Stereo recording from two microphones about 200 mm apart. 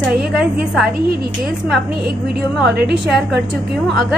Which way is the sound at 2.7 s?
55° right (ahead or behind).